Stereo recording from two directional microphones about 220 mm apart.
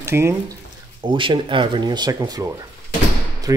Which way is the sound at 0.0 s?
10° right (ahead or behind).